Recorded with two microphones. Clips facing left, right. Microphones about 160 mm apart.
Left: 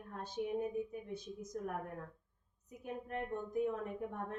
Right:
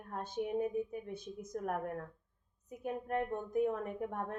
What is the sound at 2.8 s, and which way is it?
A woman's voice, 55° right (ahead or behind).